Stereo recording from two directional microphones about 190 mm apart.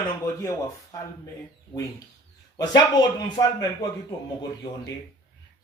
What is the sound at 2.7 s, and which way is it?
Speech, 20° left (ahead or behind).